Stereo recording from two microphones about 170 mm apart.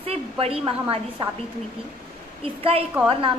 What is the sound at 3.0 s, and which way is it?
Speech, 5° right (ahead or behind).